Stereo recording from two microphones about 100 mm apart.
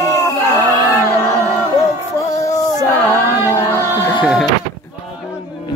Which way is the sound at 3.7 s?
25° left (ahead or behind).